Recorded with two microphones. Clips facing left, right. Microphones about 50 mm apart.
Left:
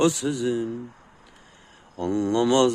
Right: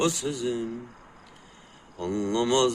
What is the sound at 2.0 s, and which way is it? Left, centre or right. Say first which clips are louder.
Speech: left 4 dB; left.